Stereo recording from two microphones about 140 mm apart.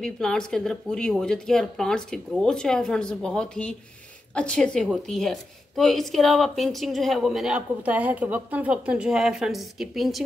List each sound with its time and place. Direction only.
0.0 s a woman's voice: 5° left (ahead or behind)